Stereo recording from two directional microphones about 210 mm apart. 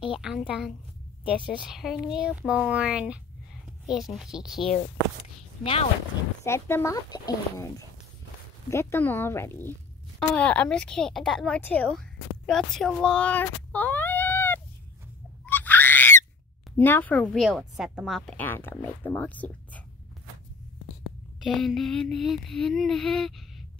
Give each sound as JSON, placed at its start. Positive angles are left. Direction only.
{"t": 0.0, "sound": "speech", "side_deg": -5}
{"t": 5.6, "sound": "speech", "side_deg": 25}
{"t": 6.4, "sound": "a woman's voice", "side_deg": 10}
{"t": 15.4, "sound": "a sound", "side_deg": 10}
{"t": 16.7, "sound": "a woman's voice", "side_deg": 10}
{"t": 21.0, "sound": "a sound", "side_deg": 0}